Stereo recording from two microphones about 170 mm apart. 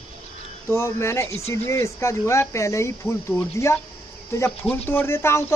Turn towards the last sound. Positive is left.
turn(degrees=15)  # may be behind; listen again after turning